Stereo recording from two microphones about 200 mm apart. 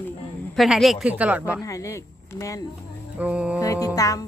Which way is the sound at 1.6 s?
15° left (ahead or behind).